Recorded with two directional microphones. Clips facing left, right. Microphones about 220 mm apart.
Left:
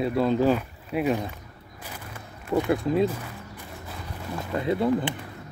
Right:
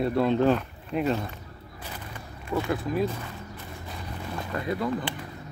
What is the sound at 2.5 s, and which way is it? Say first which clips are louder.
Speech: left 4 dB; 15° left (ahead or behind).